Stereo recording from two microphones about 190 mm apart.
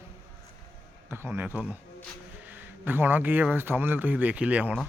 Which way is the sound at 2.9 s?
10° right (ahead or behind).